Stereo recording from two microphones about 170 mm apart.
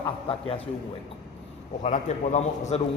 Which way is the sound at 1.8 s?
45° left (ahead or behind).